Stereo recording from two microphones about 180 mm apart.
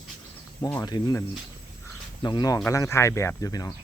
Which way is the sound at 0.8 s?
20° left (ahead or behind).